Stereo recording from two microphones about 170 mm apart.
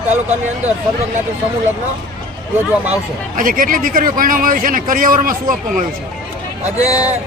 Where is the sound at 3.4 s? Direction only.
55° right (ahead or behind).